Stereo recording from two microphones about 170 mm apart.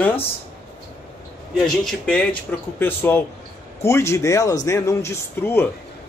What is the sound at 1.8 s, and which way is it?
Speech, 5° left (ahead or behind).